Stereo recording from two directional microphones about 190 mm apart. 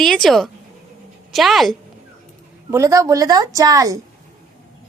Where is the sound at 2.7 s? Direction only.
15° right (ahead or behind).